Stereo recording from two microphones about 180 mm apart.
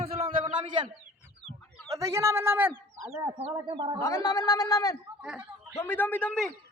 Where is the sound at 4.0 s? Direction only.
20° left (ahead or behind).